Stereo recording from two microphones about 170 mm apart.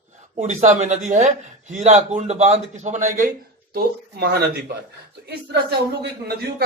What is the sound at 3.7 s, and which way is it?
Speech, 75° right (ahead or behind).